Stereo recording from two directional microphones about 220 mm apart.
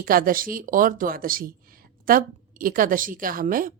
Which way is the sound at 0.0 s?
40° right (ahead or behind).